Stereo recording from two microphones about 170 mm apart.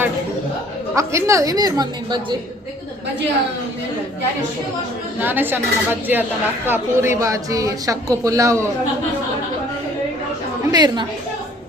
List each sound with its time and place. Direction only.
0.9 s speech: 15° right (ahead or behind)
5.2 s speech: 10° right (ahead or behind)
10.7 s speech: 25° right (ahead or behind)